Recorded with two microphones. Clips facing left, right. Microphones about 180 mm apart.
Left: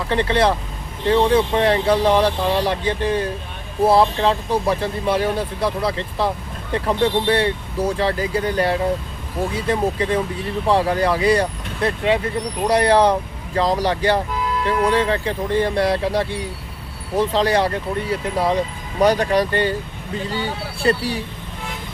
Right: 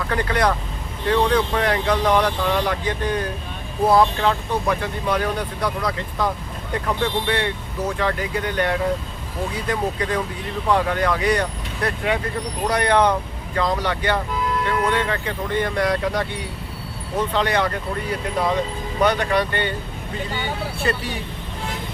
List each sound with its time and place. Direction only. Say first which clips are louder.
0.1 s speech: left 4 dB; 25° left (ahead or behind)
20.7 s speech: left 7 dB; 35° left (ahead or behind)